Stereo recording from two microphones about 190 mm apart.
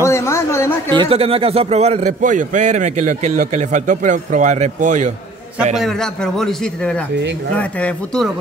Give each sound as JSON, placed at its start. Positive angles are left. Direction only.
{"t": 0.0, "sound": "a sound", "side_deg": 15}
{"t": 0.9, "sound": "a man's voice", "side_deg": -30}
{"t": 5.8, "sound": "a man's voice", "side_deg": 0}